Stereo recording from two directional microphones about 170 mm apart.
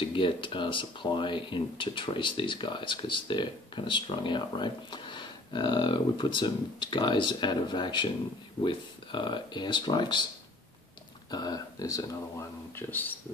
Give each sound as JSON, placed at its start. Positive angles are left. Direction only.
{"t": 0.0, "sound": "speech", "side_deg": 30}
{"t": 11.2, "sound": "speech", "side_deg": 20}